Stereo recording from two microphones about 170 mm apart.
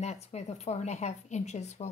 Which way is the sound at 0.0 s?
40° left (ahead or behind).